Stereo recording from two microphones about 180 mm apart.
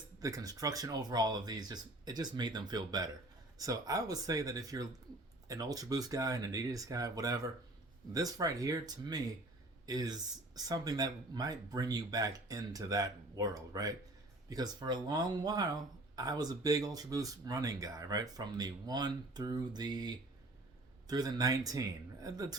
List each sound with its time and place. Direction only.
0.2 s speech: 20° right (ahead or behind)